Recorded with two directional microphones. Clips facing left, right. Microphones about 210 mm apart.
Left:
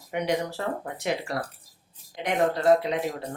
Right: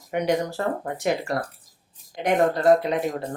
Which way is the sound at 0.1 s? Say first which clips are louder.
Right 4 dB; 45° right (ahead or behind).